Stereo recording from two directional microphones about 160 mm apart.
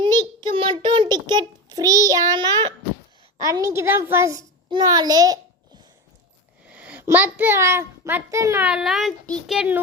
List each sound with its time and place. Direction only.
0.0 s child singing: 25° right (ahead or behind)
3.3 s a child's voice: 20° right (ahead or behind)
6.7 s a child's voice: 10° right (ahead or behind)
8.6 s a child's voice: 5° right (ahead or behind)
9.6 s speech: 10° right (ahead or behind)